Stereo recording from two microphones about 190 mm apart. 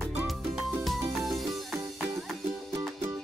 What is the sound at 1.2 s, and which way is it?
Music, centre (ahead or behind).